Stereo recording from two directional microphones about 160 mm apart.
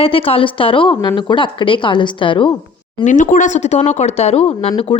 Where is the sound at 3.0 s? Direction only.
50° left (ahead or behind); by 5.0 s 35° left (ahead or behind).